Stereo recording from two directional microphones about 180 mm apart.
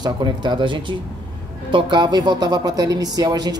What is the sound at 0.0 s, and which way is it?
Speech, 25° right (ahead or behind).